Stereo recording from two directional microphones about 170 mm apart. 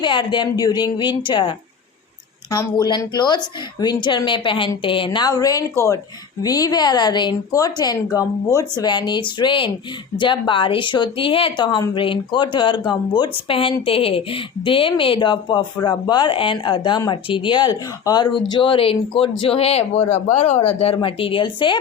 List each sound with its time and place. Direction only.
0.0 s a woman's voice: 25° left (ahead or behind)